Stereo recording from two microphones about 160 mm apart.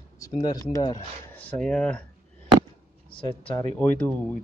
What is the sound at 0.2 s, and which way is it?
Speech, 25° left (ahead or behind).